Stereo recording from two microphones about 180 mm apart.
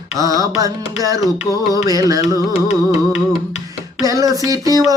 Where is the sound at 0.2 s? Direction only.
20° right (ahead or behind).